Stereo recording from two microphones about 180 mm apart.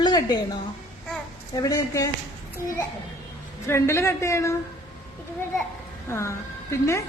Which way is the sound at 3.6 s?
15° left (ahead or behind).